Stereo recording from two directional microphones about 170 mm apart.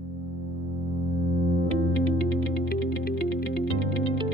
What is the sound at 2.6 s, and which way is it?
Music, 65° left (ahead or behind).